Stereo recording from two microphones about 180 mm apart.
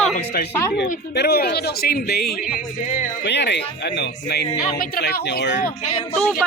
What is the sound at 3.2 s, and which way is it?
Speech, 70° left (ahead or behind).